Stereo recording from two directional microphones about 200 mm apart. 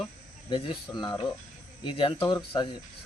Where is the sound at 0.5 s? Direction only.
25° left (ahead or behind).